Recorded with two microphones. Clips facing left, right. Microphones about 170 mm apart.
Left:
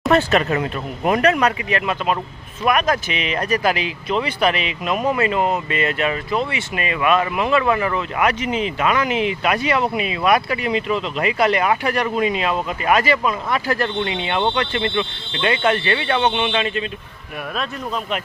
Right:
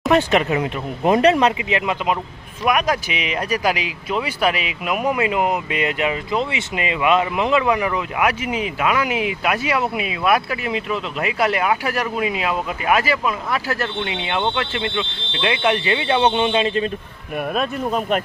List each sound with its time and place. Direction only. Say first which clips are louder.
0.1 s speech: even; 15° right (ahead or behind)
17.5 s speech: right 4 dB; 45° right (ahead or behind)